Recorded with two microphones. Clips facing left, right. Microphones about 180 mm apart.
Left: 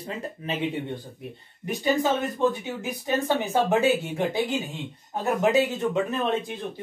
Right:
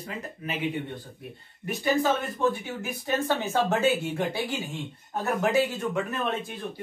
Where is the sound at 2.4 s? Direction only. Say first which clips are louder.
Left 2 dB; 20° left (ahead or behind).